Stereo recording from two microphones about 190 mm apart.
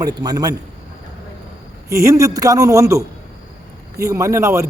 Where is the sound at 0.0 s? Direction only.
20° right (ahead or behind).